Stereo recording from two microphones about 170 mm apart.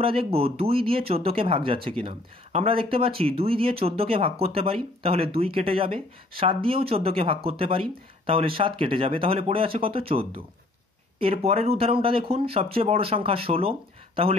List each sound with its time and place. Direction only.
0.0 s speech: 35° right (ahead or behind)